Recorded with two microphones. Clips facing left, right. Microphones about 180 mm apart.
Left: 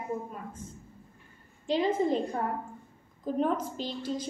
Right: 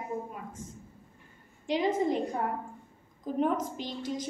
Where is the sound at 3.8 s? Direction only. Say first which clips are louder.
Left 1 dB; 20° right (ahead or behind).